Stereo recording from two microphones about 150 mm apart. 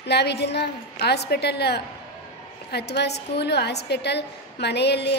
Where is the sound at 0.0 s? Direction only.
90° left.